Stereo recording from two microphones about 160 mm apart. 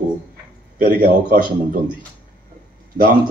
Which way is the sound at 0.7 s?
60° right (ahead or behind).